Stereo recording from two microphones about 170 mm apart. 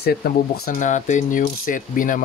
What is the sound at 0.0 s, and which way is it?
Speech, 65° left (ahead or behind).